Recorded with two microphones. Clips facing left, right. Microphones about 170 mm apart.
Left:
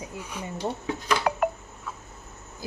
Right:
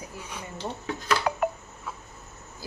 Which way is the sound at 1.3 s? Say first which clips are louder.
Left 2 dB; 60° left (ahead or behind).